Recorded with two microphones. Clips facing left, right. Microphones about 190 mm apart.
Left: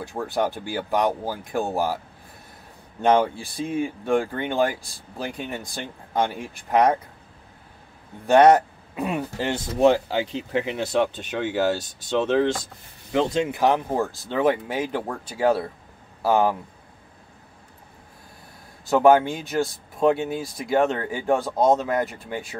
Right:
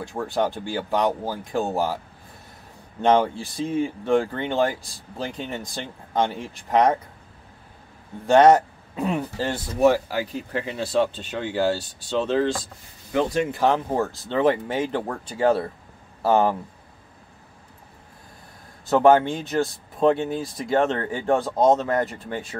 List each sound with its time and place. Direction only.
0.2 s speech: 10° left (ahead or behind)
3.0 s speech: 10° left (ahead or behind)
8.3 s speech: 15° left (ahead or behind)
18.9 s speech: 10° left (ahead or behind)